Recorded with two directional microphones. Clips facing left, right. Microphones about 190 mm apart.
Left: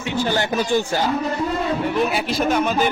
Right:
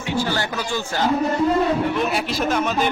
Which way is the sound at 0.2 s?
20° left (ahead or behind).